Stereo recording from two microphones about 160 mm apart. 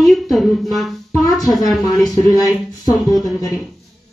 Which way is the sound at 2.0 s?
25° left (ahead or behind).